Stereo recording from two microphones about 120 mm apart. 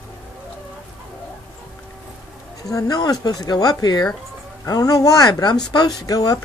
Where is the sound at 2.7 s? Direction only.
30° left (ahead or behind).